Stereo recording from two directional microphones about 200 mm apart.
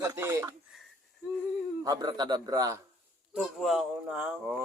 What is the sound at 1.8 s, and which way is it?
Speech, 20° right (ahead or behind).